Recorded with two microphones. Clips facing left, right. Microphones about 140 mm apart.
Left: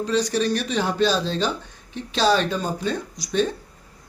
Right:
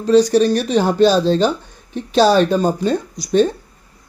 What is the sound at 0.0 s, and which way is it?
Speech, 35° right (ahead or behind).